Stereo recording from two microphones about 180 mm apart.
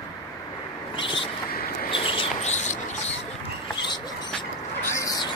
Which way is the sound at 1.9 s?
30° left (ahead or behind).